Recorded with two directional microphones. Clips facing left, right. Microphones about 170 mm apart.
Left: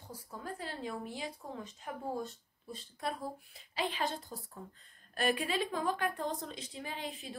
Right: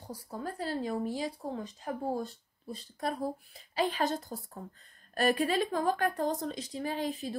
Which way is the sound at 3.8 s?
45° right (ahead or behind).